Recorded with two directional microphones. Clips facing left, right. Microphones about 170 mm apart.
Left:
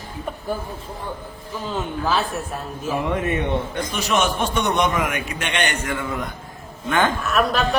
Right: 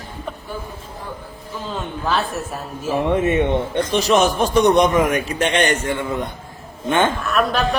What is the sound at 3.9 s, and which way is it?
A man's voice, 35° right (ahead or behind).